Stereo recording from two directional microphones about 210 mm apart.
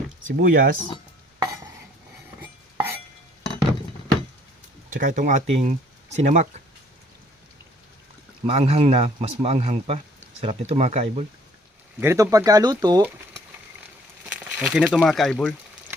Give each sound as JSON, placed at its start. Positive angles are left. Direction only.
{"t": 0.3, "sound": "speech", "side_deg": -40}
{"t": 2.4, "sound": "cutlery", "side_deg": -10}
{"t": 4.9, "sound": "speech", "side_deg": -40}
{"t": 8.4, "sound": "speech", "side_deg": -30}
{"t": 11.9, "sound": "speech", "side_deg": -15}
{"t": 14.3, "sound": "speech", "side_deg": -5}